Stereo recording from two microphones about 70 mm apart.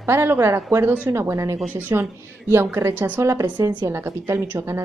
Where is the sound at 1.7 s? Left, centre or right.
Right.